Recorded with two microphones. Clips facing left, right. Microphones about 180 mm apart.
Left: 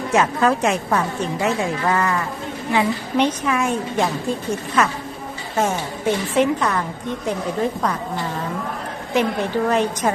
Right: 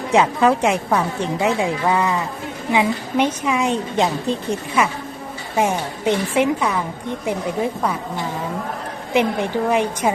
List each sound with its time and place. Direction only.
0.2 s a woman's voice: 10° right (ahead or behind)
9.1 s a woman's voice: 15° right (ahead or behind)